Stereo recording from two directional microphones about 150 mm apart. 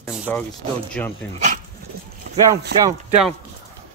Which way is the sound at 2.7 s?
90° right.